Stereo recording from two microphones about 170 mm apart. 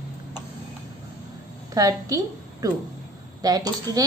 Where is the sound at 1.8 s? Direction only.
20° right (ahead or behind).